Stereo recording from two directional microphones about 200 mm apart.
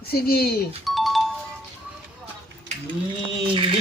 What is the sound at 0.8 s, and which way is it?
Music, centre (ahead or behind).